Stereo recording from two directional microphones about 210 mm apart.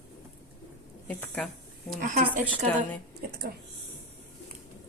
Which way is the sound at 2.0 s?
35° right (ahead or behind).